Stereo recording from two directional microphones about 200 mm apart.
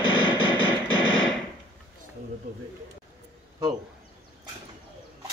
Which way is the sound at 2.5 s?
40° right (ahead or behind).